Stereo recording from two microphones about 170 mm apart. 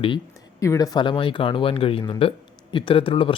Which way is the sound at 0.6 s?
20° left (ahead or behind).